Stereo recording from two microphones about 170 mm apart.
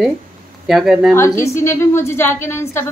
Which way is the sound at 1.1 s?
15° left (ahead or behind).